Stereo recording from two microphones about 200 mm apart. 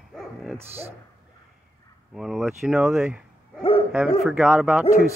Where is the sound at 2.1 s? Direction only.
Centre (ahead or behind).